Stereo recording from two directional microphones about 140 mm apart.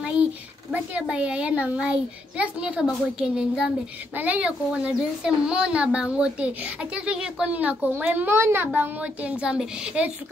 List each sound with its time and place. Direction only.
0.0 s a child's voice: 5° right (ahead or behind)